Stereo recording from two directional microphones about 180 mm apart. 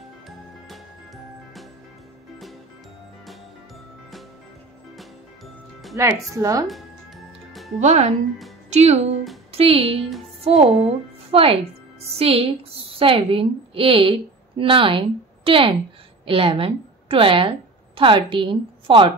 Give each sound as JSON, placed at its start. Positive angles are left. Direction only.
{"t": 0.7, "sound": "music", "side_deg": 0}
{"t": 4.9, "sound": "music", "side_deg": 0}
{"t": 5.9, "sound": "speech", "side_deg": -15}
{"t": 6.7, "sound": "music", "side_deg": 0}
{"t": 7.8, "sound": "a woman's voice", "side_deg": -40}